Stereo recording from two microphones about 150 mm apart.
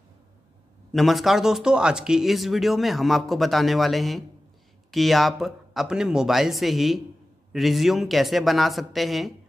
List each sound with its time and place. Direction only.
0.9 s speech: centre (ahead or behind)